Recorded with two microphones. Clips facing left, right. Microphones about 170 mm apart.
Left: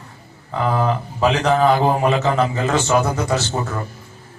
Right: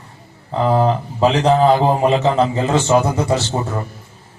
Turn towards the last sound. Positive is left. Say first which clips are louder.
# right 2 dB
turn(degrees=-30)  # may be behind; listen again after turning